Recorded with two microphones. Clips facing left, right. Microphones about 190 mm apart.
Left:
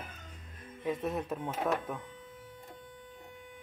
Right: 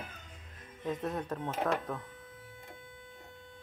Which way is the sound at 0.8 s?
10° left (ahead or behind).